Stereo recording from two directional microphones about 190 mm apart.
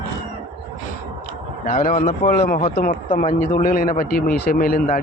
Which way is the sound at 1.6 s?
45° left (ahead or behind).